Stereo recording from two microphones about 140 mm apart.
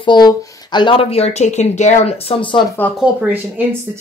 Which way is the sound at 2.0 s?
45° left (ahead or behind).